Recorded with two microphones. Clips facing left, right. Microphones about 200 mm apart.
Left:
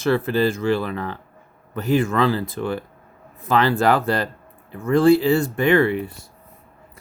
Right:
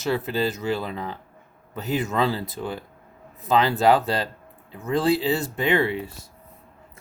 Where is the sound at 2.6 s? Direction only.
90° left.